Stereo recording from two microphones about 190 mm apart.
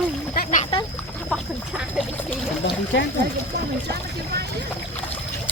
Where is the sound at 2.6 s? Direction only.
60° left (ahead or behind).